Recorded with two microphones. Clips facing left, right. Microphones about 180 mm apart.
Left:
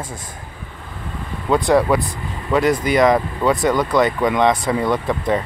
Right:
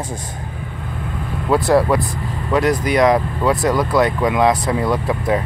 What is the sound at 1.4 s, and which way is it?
Speech, 5° right (ahead or behind).